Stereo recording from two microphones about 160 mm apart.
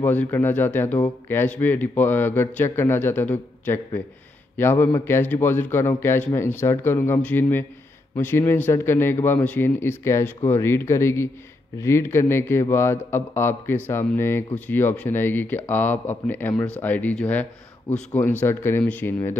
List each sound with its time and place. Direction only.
0.0 s speech: 10° left (ahead or behind)